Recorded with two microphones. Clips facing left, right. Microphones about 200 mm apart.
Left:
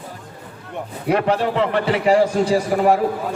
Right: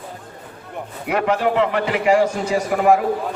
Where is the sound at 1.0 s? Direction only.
35° left (ahead or behind).